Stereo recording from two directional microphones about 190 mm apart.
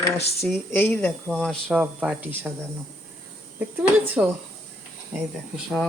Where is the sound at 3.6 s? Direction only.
10° right (ahead or behind).